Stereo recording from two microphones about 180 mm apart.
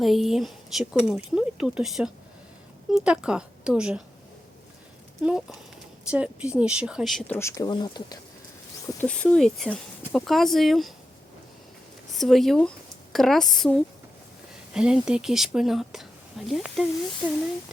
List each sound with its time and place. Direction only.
0.0 s speech: centre (ahead or behind)
5.2 s speech: 5° right (ahead or behind)
7.3 s speech: 15° left (ahead or behind)
9.0 s speech: 5° left (ahead or behind)
12.1 s speech: centre (ahead or behind)